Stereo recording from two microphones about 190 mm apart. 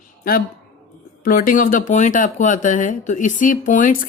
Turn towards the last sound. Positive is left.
turn(degrees=45)  # may be behind; listen again after turning